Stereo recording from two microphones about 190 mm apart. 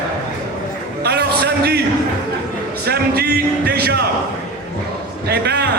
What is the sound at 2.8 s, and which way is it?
Music, 55° right (ahead or behind).